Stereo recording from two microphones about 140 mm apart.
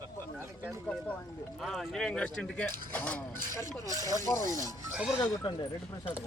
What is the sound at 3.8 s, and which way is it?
Speech, 25° right (ahead or behind).